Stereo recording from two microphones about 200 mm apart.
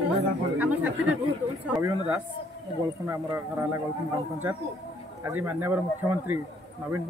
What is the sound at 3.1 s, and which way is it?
Speech, 15° right (ahead or behind).